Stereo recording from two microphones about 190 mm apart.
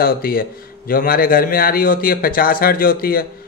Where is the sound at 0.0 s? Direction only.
50° left (ahead or behind).